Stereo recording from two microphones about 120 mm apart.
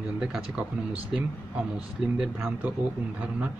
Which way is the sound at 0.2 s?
5° right (ahead or behind).